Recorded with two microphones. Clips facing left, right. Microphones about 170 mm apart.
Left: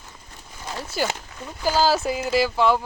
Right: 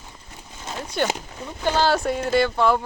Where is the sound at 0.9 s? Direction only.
5° left (ahead or behind).